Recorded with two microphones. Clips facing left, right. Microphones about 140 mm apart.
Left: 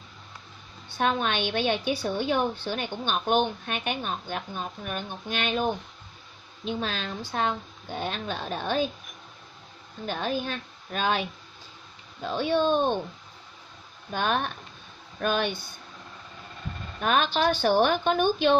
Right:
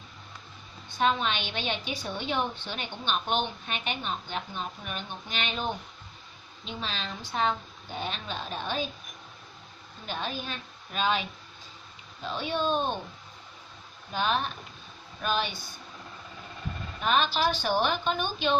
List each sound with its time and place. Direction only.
0.9 s a woman's voice: 50° left (ahead or behind)
10.0 s a woman's voice: 50° left (ahead or behind)
14.1 s a woman's voice: 55° left (ahead or behind)
17.0 s a woman's voice: 55° left (ahead or behind)